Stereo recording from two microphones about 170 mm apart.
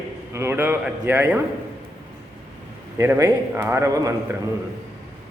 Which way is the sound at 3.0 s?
15° right (ahead or behind).